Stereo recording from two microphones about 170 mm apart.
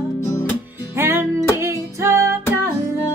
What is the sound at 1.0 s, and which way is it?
Music, 15° right (ahead or behind).